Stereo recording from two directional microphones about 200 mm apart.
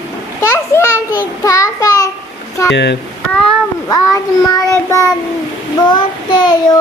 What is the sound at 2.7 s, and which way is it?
Speech, 60° left (ahead or behind).